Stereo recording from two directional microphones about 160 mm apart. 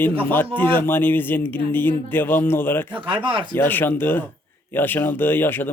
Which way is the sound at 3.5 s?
10° left (ahead or behind).